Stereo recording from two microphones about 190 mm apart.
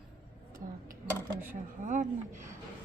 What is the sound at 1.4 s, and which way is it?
Speech, 45° right (ahead or behind).